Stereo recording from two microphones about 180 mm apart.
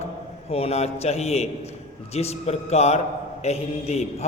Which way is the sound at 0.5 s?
35° left (ahead or behind).